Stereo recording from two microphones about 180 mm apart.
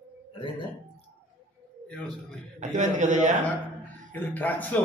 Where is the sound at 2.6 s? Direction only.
45° right (ahead or behind).